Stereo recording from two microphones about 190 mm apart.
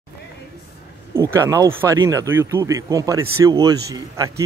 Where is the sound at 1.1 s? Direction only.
15° right (ahead or behind).